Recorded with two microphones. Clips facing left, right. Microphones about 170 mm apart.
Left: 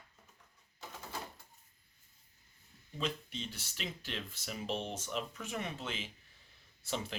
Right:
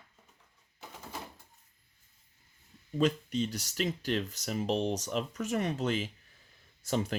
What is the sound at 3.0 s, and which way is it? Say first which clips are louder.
Speech: right 11 dB; 45° right (ahead or behind).